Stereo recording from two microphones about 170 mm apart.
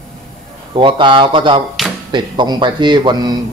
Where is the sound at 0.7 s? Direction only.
30° right (ahead or behind).